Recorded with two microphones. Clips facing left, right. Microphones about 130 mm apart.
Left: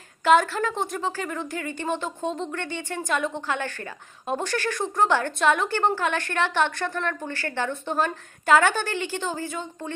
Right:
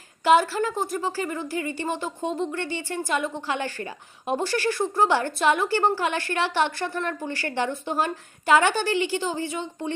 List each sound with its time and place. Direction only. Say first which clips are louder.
0.3 s a woman's voice: even; 5° right (ahead or behind)
8.9 s a woman's voice: right 4 dB; 50° left (ahead or behind)